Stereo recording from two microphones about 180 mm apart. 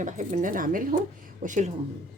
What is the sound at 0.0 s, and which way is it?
Speech, 45° right (ahead or behind).